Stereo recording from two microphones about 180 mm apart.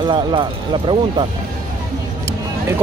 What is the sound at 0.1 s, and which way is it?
Speech, 25° right (ahead or behind).